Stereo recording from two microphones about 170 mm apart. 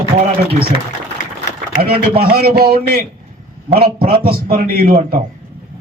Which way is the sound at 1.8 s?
65° right (ahead or behind).